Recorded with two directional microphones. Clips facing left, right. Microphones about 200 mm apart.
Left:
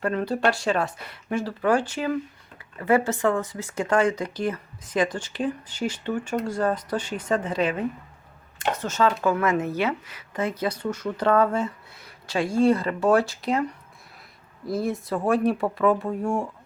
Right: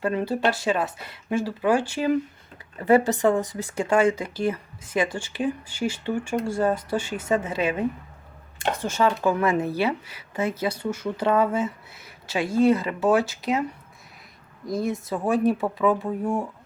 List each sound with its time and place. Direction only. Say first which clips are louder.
0.0 s speech: even; 15° right (ahead or behind)
0.5 s speech: even; 5° right (ahead or behind)
0.9 s speech: even; 25° right (ahead or behind)
1.3 s speech: right 1 dB; 5° right (ahead or behind)
3.0 s speech: right 2 dB; 15° right (ahead or behind)
9.4 s speech: right 1 dB; 30° right (ahead or behind)
9.6 s speech: right 1 dB; 10° right (ahead or behind)
10.1 s speech: right 1 dB; 30° right (ahead or behind)
10.6 s speech: even; 10° right (ahead or behind)